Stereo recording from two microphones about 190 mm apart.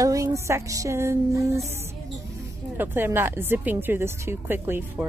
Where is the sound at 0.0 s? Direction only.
15° right (ahead or behind).